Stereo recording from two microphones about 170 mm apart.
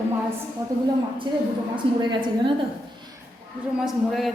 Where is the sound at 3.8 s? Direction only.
Centre (ahead or behind).